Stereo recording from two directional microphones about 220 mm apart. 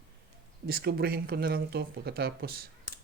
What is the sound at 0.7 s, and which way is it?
Speech, 45° right (ahead or behind).